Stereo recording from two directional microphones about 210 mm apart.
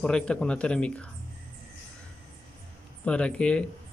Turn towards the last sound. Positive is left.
turn(degrees=5)  # may be behind; listen again after turning